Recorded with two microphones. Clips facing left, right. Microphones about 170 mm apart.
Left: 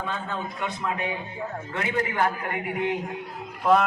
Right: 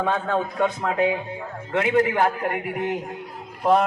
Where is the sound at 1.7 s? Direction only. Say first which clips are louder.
Right 9 dB; 70° right (ahead or behind).